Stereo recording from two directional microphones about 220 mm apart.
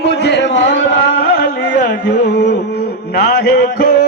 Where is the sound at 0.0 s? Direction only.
50° left (ahead or behind).